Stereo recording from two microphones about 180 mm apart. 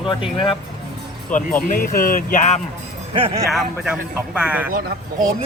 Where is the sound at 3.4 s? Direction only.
5° right (ahead or behind).